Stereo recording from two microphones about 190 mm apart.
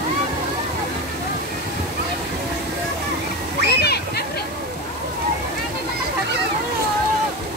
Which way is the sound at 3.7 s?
60° left (ahead or behind).